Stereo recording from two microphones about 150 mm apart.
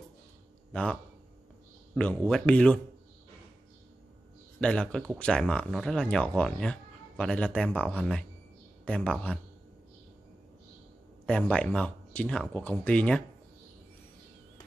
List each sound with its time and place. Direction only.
2.2 s speech: 5° left (ahead or behind)
4.6 s speech: 5° left (ahead or behind)
11.2 s speech: 10° left (ahead or behind)